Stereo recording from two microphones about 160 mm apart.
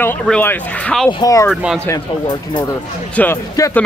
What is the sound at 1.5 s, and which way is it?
Speech, 5° right (ahead or behind).